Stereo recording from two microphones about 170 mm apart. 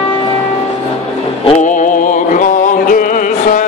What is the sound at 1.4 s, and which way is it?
Music, 45° left (ahead or behind).